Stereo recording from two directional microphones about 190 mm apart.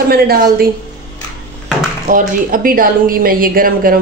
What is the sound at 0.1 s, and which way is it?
Speech, 50° right (ahead or behind).